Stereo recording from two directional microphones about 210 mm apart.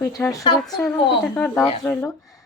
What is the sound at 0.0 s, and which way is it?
A woman's voice, 15° left (ahead or behind).